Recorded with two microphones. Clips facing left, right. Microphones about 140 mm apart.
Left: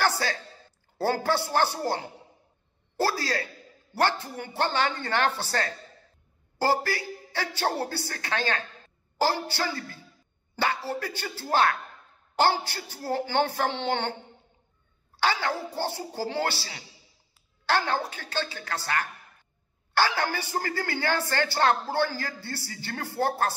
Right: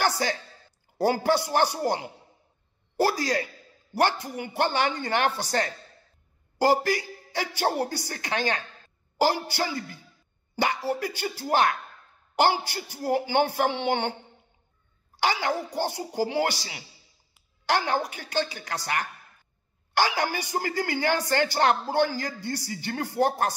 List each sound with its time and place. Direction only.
0.0 s a sound: 15° right (ahead or behind)
0.9 s speech: 15° right (ahead or behind)
15.1 s a woman's voice: 15° right (ahead or behind)